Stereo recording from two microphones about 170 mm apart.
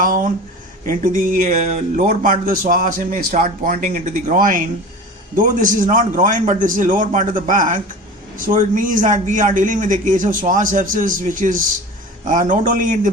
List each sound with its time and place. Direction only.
0.9 s speech: 55° right (ahead or behind)